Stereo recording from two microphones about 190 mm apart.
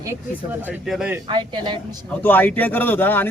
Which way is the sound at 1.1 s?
25° right (ahead or behind).